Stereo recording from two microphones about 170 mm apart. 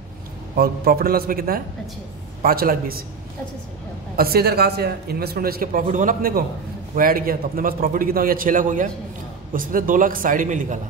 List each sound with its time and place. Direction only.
0.6 s a man's voice: 65° right (ahead or behind)
4.2 s a man's voice: 65° right (ahead or behind); by 10.8 s 50° right (ahead or behind)